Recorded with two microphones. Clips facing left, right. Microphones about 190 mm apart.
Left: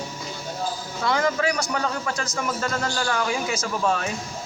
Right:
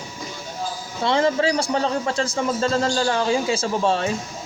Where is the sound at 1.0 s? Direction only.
25° right (ahead or behind).